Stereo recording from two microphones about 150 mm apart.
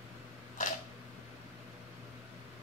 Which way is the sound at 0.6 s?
55° left (ahead or behind).